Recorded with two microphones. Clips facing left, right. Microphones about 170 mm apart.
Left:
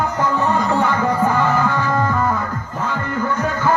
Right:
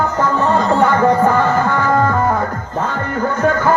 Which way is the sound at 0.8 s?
55° right (ahead or behind).